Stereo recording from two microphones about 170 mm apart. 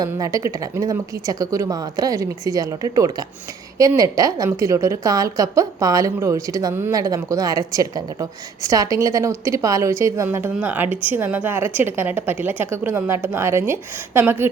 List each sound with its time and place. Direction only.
0.0 s a woman's voice: 20° right (ahead or behind)